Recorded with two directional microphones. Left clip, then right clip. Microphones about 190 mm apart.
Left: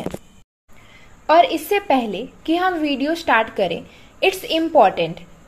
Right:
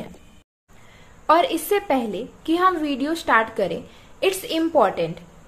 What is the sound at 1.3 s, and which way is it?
A woman's voice, centre (ahead or behind).